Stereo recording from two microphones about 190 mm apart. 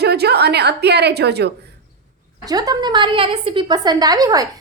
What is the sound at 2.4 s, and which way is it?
A woman's voice, 20° right (ahead or behind).